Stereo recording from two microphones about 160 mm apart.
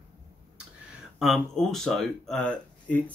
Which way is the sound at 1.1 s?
Centre (ahead or behind).